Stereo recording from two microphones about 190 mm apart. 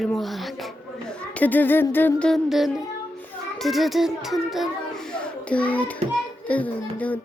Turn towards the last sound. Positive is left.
turn(degrees=10)  # may be behind; listen again after turning